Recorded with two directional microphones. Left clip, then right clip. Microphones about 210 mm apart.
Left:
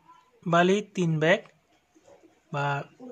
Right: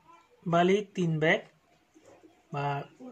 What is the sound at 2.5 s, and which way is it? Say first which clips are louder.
Speech: left 4 dB; 35° left (ahead or behind).